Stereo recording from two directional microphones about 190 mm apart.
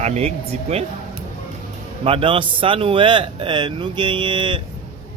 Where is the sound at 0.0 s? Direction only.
35° right (ahead or behind).